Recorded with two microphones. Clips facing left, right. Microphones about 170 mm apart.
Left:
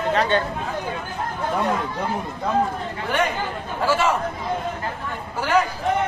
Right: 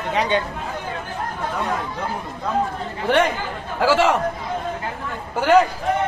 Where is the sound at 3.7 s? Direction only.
85° right.